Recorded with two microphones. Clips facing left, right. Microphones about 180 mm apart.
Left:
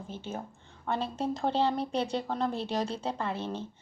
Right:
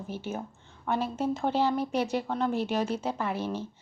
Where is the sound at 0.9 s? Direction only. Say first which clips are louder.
Right 3 dB; 30° left (ahead or behind).